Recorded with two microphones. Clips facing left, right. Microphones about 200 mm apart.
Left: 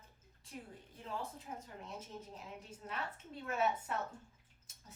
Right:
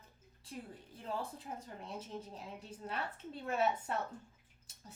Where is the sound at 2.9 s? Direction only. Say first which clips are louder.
Right 3 dB; 30° right (ahead or behind).